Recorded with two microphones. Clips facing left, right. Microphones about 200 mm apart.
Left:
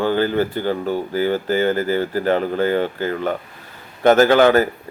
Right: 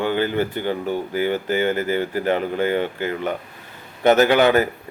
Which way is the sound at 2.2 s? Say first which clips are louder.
Left 3 dB; 15° right (ahead or behind).